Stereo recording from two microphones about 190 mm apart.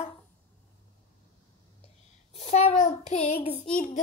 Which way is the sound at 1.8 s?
35° left (ahead or behind).